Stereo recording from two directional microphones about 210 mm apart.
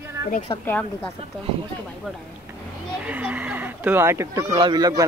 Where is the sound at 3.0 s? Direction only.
5° right (ahead or behind).